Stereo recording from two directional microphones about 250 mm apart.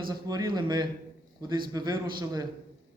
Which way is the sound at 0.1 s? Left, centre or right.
Centre.